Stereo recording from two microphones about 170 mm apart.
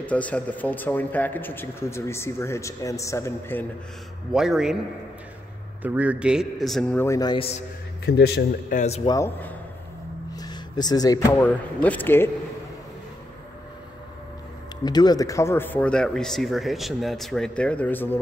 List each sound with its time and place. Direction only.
0.0 s speech: 10° left (ahead or behind)
4.3 s a man's voice: 5° right (ahead or behind)
5.8 s a man's voice: 10° right (ahead or behind); by 7.3 s 20° left (ahead or behind)
7.3 s speech: 35° left (ahead or behind)
8.0 s a man's voice: 70° left (ahead or behind)
8.7 s speech: 40° left (ahead or behind)
9.0 s speech: 20° left (ahead or behind)
10.3 s speech: 25° left (ahead or behind)
14.9 s speech: 25° left (ahead or behind)